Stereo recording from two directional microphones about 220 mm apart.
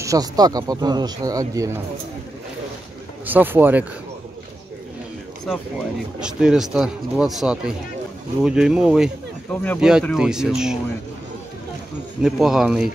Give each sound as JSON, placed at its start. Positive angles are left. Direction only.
{"t": 0.0, "sound": "speech", "side_deg": -15}
{"t": 3.3, "sound": "speech", "side_deg": -10}
{"t": 5.5, "sound": "speech", "side_deg": 0}
{"t": 12.2, "sound": "speech", "side_deg": 0}